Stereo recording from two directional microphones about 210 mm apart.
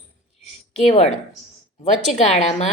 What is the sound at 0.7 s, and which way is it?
Speech, 30° left (ahead or behind).